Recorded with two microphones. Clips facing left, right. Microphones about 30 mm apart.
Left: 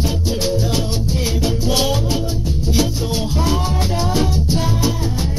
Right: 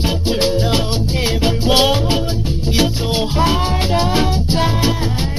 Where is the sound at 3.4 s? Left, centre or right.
Right.